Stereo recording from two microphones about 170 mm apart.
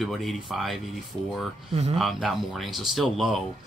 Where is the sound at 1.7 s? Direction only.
40° right (ahead or behind).